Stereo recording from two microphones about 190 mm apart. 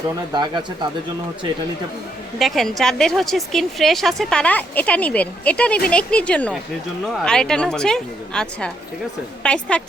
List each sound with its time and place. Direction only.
0.3 s speech: 25° right (ahead or behind)
2.4 s a woman's voice: centre (ahead or behind)